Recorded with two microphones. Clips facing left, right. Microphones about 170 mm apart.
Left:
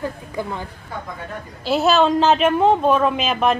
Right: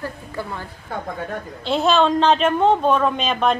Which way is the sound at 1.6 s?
5° left (ahead or behind).